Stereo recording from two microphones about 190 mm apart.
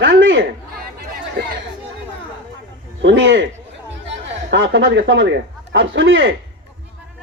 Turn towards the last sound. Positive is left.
turn(degrees=-75)  # may be behind; listen again after turning